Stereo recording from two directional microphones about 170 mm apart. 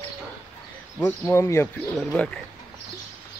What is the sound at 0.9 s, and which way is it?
Speech, 15° left (ahead or behind).